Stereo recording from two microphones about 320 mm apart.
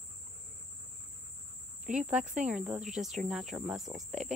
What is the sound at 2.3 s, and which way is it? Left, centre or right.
Cricket, right.